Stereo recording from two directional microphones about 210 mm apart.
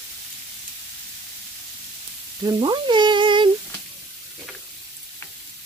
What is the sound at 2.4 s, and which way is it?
Frying, 20° right (ahead or behind).